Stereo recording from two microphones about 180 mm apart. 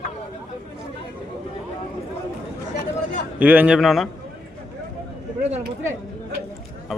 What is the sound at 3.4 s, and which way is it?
Speech, 10° right (ahead or behind).